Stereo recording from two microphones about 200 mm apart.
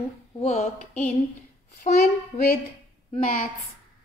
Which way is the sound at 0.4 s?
35° left (ahead or behind).